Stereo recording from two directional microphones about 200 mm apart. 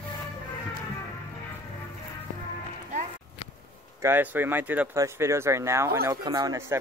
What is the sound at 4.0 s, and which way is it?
Speech, 10° right (ahead or behind).